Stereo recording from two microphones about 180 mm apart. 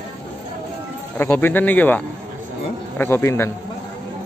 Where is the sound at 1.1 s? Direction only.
10° left (ahead or behind).